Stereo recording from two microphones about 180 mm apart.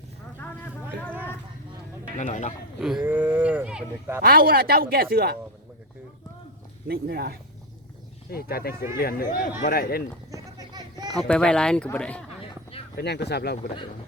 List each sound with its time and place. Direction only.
0.3 s a sound: 10° left (ahead or behind)
2.1 s speech: 45° left (ahead or behind)
2.8 s speech: 5° right (ahead or behind)
4.2 s speech: 55° right (ahead or behind)
6.8 s speech: 60° right (ahead or behind)
8.3 s speech: 60° left (ahead or behind)
10.3 s a sound: 20° right (ahead or behind)
11.3 s speech: 5° left (ahead or behind)
13.0 s speech: 70° left (ahead or behind)